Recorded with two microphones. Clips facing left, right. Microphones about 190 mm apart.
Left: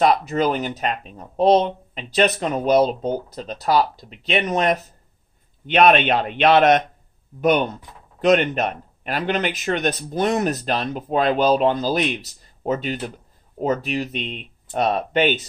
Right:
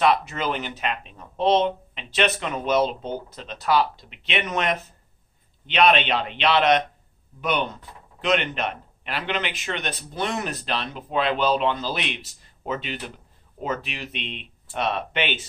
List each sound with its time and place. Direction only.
0.0 s speech: 40° left (ahead or behind)
5.7 s speech: 50° left (ahead or behind)